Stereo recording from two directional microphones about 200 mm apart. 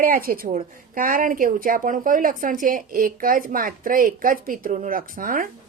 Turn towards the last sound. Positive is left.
turn(degrees=-45)  # may be behind; listen again after turning